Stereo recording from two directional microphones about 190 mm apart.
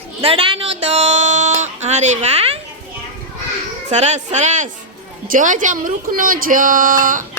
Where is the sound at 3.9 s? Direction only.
35° right (ahead or behind).